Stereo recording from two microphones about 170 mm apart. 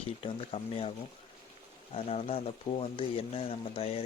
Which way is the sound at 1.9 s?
35° left (ahead or behind).